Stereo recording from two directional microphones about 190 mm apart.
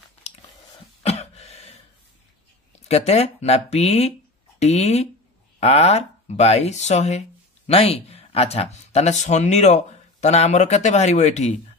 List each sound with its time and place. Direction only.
1.0 s throat clearing: 35° left (ahead or behind)
2.9 s speech: 35° left (ahead or behind)